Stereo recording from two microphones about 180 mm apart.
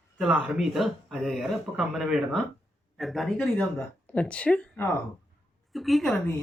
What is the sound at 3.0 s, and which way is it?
A man's voice, centre (ahead or behind).